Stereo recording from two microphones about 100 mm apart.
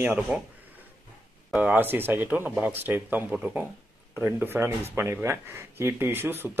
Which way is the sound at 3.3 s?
10° right (ahead or behind).